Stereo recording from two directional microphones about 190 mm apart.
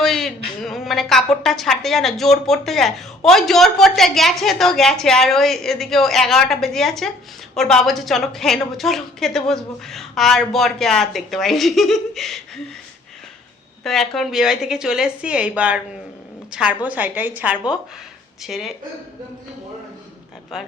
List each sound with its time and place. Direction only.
0.0 s a woman's voice: centre (ahead or behind)
13.8 s a woman's voice: centre (ahead or behind)